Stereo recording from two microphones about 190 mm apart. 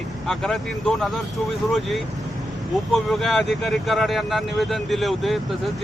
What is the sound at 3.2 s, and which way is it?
Speech, centre (ahead or behind).